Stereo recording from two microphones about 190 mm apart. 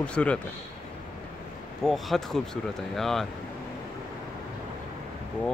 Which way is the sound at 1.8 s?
Centre (ahead or behind).